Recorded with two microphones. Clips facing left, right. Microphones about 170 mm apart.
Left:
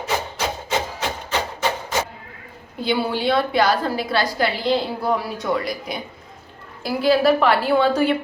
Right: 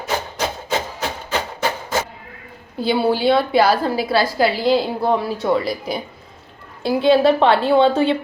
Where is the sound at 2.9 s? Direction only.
30° right (ahead or behind).